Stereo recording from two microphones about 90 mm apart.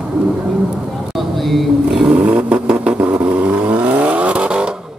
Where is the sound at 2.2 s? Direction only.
15° right (ahead or behind).